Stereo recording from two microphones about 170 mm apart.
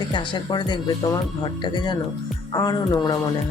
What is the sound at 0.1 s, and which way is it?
Speech, 25° left (ahead or behind).